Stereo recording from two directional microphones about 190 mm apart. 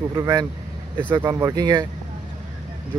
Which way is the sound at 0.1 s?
15° right (ahead or behind).